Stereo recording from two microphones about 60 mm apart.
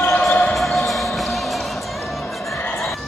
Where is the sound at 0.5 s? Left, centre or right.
Centre.